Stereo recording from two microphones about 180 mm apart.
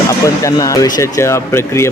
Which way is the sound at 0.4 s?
20° left (ahead or behind).